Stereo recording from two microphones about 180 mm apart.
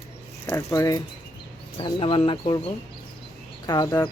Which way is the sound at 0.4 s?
15° left (ahead or behind).